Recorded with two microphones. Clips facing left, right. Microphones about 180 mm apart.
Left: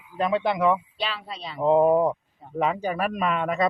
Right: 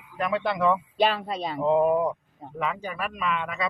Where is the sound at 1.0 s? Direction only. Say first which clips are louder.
Right 8 dB; 50° right (ahead or behind).